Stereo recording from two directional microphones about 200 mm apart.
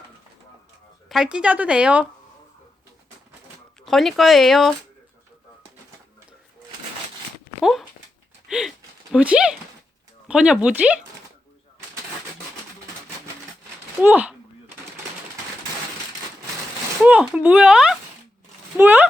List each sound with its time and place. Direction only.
1.0 s speech: centre (ahead or behind)
3.8 s speech: centre (ahead or behind)
7.6 s speech: centre (ahead or behind)
8.4 s a sound: 5° right (ahead or behind)
9.1 s speech: 5° right (ahead or behind)
14.0 s speech: 5° right (ahead or behind)
17.0 s speech: 5° right (ahead or behind)